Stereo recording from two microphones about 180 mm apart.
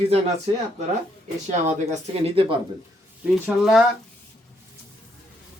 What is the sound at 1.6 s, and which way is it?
Speech, 35° right (ahead or behind).